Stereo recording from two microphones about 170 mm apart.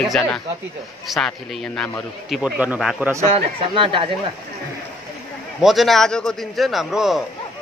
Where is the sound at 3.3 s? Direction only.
30° right (ahead or behind).